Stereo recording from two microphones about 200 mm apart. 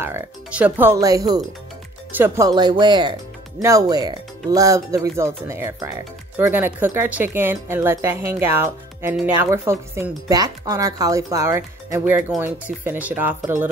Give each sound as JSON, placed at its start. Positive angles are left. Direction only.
{"t": 0.0, "sound": "speech", "side_deg": -10}